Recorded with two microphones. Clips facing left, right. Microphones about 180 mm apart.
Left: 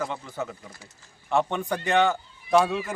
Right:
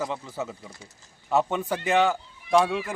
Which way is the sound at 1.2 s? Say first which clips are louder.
Right 1 dB; 5° right (ahead or behind).